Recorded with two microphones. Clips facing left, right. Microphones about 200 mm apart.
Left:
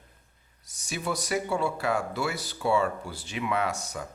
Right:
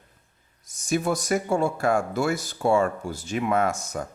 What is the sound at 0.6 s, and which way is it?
Speech, 50° right (ahead or behind).